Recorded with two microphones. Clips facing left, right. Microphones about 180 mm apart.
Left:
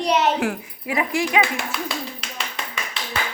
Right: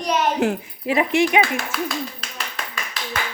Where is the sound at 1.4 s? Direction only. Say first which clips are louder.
Right 1 dB; 20° left (ahead or behind).